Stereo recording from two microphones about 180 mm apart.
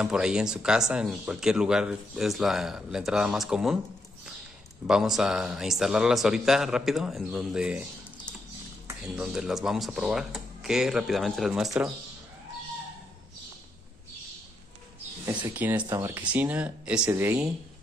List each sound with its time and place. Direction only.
0.0 s speech: 5° right (ahead or behind)
4.8 s speech: 5° right (ahead or behind)
9.0 s speech: 5° right (ahead or behind)
15.2 s speech: 10° right (ahead or behind)